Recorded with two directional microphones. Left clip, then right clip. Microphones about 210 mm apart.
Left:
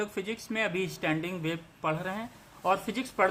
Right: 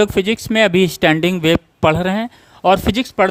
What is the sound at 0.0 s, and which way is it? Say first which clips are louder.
Speech: right 19 dB; 50° right (ahead or behind).